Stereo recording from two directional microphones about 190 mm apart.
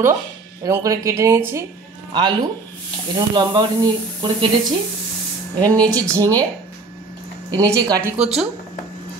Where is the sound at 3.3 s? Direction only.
25° right (ahead or behind).